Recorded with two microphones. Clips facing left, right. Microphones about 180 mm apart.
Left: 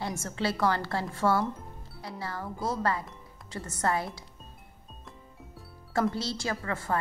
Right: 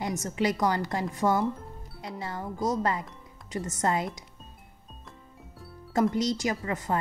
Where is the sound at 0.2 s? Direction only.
15° right (ahead or behind).